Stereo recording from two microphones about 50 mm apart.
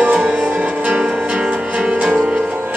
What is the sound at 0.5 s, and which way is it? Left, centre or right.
Music, right.